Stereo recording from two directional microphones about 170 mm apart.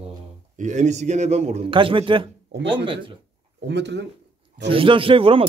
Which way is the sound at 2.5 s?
90° right.